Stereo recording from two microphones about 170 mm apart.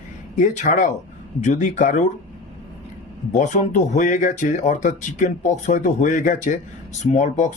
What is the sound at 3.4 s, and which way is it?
Speech, 45° left (ahead or behind).